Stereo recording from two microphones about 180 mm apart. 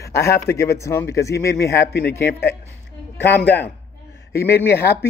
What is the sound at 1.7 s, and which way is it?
Speech, 65° left (ahead or behind).